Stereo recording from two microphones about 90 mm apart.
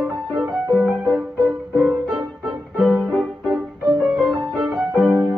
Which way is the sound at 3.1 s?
5° right (ahead or behind).